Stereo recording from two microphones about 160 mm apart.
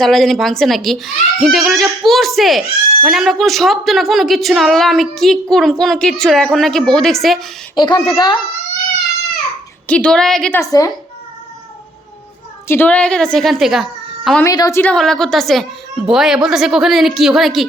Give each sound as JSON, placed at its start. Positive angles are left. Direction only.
{"t": 0.0, "sound": "a child's voice", "side_deg": 0}
{"t": 7.8, "sound": "a child's voice", "side_deg": 25}
{"t": 9.8, "sound": "a child's voice", "side_deg": 5}
{"t": 10.6, "sound": "a child's voice", "side_deg": 20}
{"t": 12.6, "sound": "a child's voice", "side_deg": 10}
{"t": 14.4, "sound": "a child's voice", "side_deg": 20}
{"t": 14.8, "sound": "a child's voice", "side_deg": 5}